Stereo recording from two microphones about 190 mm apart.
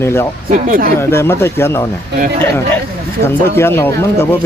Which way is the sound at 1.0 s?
15° left (ahead or behind).